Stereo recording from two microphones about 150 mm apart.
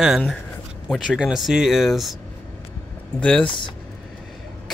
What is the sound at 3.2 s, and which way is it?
Speech, 5° left (ahead or behind).